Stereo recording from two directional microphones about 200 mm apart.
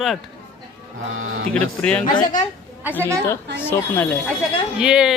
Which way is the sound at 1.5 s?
5° left (ahead or behind).